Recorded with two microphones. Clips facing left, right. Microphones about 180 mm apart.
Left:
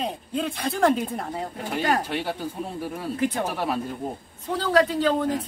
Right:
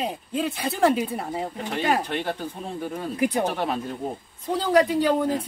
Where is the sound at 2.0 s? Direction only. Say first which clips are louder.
Even; 5° left (ahead or behind).